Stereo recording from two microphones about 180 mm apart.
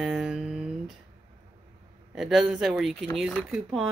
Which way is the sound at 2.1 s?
Centre (ahead or behind).